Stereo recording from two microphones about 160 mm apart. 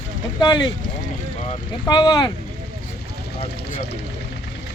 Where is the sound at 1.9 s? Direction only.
25° left (ahead or behind).